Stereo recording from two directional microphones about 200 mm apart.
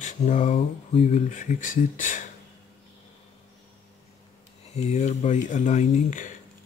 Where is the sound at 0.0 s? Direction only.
40° left (ahead or behind).